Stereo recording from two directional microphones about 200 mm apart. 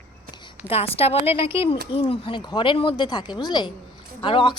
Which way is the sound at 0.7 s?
30° left (ahead or behind).